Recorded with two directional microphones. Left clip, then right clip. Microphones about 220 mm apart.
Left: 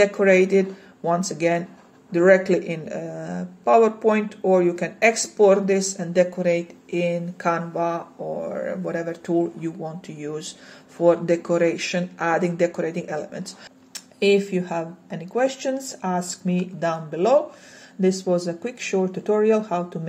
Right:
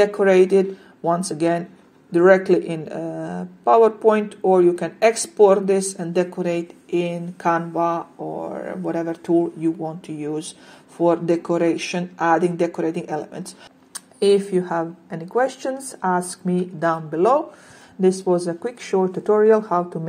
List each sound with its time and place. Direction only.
0.0 s speech: 20° right (ahead or behind)
14.5 s speech: 20° right (ahead or behind)